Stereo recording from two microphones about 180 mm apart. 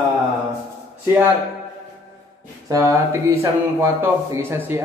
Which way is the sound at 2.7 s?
15° right (ahead or behind).